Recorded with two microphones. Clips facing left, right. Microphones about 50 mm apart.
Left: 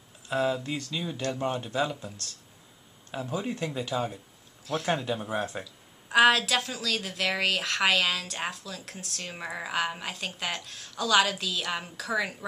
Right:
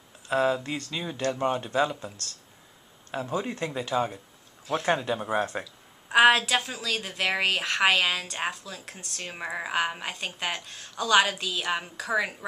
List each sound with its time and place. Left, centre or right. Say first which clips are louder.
0.3 s speech: right 3 dB; centre
3.3 s speech: right 1 dB; centre
3.9 s speech: right 4 dB; right
4.6 s speech: right 3 dB; centre